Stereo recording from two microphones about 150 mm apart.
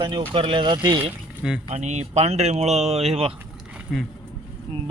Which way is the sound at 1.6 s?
50° right (ahead or behind).